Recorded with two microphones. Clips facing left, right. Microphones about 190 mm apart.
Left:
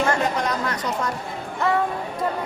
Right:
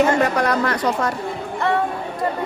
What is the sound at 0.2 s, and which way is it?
Speech, 65° right (ahead or behind).